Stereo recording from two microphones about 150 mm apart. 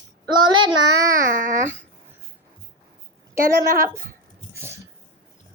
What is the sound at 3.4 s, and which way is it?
Speech, 75° right (ahead or behind).